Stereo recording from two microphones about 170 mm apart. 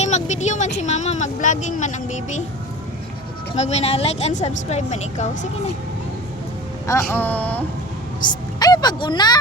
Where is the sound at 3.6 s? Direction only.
40° left (ahead or behind).